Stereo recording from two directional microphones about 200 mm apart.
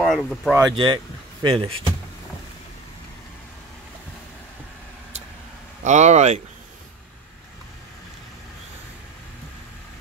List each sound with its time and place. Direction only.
0.0 s speech: centre (ahead or behind)
0.6 s speech: 20° right (ahead or behind)
5.9 s speech: 35° right (ahead or behind)